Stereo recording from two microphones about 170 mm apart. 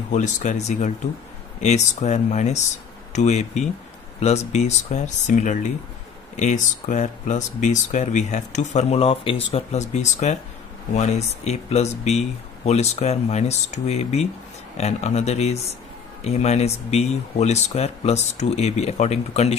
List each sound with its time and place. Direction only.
0.1 s speech: 45° left (ahead or behind)